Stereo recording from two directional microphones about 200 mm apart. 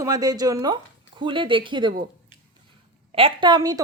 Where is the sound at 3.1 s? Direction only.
25° right (ahead or behind).